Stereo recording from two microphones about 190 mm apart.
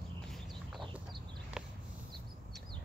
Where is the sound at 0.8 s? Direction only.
25° right (ahead or behind).